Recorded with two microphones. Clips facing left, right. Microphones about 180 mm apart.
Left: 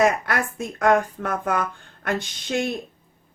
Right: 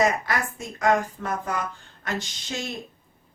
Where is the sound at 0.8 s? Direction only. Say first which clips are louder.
Left 3 dB; 60° left (ahead or behind).